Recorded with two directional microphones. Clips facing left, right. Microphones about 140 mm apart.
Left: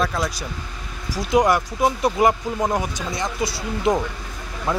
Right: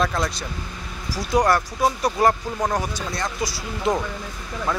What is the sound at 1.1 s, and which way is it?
Speech, 20° left (ahead or behind).